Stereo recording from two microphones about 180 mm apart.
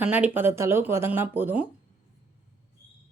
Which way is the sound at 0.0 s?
10° right (ahead or behind).